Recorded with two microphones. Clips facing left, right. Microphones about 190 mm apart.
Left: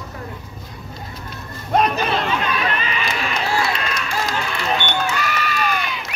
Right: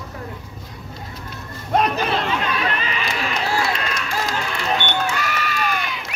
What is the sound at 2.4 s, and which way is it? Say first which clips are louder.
Crowd: left 1 dB; 30° right (ahead or behind).